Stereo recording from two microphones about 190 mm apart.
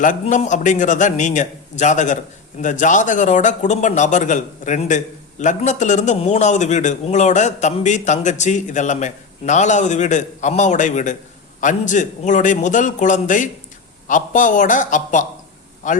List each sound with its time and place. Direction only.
0.0 s a man's voice: 40° left (ahead or behind)